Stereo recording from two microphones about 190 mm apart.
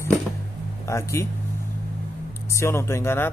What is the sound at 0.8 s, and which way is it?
Speech, 15° left (ahead or behind).